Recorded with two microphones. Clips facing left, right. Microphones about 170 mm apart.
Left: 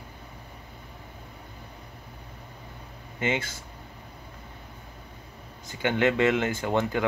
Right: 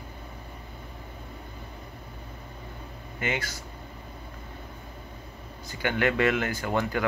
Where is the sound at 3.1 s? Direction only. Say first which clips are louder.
Left 3 dB; 25° left (ahead or behind).